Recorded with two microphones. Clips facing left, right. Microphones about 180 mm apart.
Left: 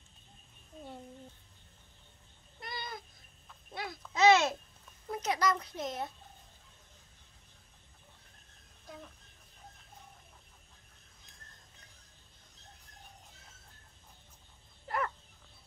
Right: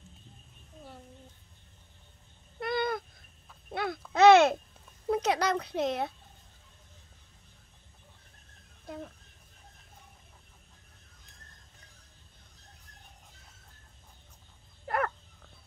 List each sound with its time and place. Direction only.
2.6 s owl: 60° right (ahead or behind)
3.7 s babbling: 60° right (ahead or behind)
4.1 s a sound: 60° right (ahead or behind)
14.9 s dog: 60° right (ahead or behind)